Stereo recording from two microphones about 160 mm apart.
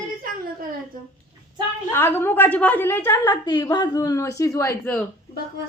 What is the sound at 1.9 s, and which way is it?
A woman's voice, 15° left (ahead or behind).